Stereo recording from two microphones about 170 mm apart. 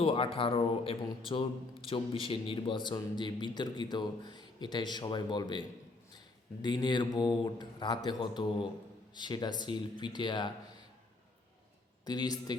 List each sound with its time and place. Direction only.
0.0 s a man's voice: 30° left (ahead or behind)
12.0 s a man's voice: 25° left (ahead or behind)